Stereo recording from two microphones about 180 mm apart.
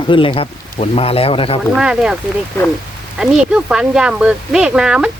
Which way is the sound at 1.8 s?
5° right (ahead or behind).